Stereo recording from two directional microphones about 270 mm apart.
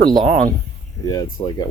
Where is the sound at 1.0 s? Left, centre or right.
Centre.